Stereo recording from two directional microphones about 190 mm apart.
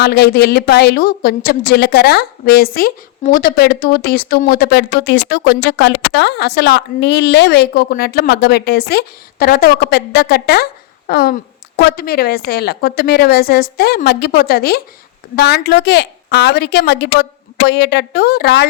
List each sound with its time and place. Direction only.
0.0 s a woman's voice: 55° left (ahead or behind)